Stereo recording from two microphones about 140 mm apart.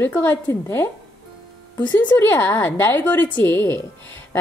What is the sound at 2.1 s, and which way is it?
Speech, 15° left (ahead or behind).